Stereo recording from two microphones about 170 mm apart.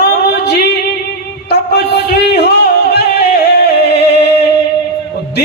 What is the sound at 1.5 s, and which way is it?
Music, 75° left (ahead or behind).